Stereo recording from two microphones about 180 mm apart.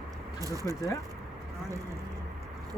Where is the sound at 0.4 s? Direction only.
20° right (ahead or behind).